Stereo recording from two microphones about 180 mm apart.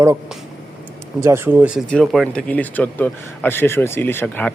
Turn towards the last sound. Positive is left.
turn(degrees=10)  # may be behind; listen again after turning